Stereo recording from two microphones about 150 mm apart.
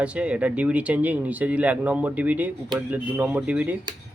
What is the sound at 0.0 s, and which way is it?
Speech, 10° right (ahead or behind).